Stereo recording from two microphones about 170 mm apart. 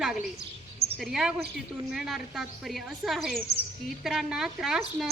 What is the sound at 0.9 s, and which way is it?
Speech, 5° right (ahead or behind).